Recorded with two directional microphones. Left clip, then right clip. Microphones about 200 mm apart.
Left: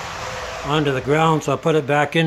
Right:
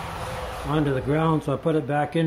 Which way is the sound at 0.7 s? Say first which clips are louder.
Left 6 dB; 15° left (ahead or behind).